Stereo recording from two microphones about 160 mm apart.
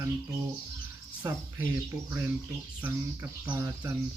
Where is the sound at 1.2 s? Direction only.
20° right (ahead or behind).